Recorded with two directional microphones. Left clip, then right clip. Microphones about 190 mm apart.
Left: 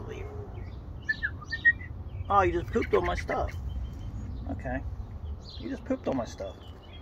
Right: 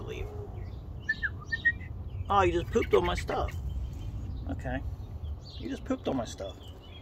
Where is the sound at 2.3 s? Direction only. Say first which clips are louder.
Left 1 dB; 10° right (ahead or behind).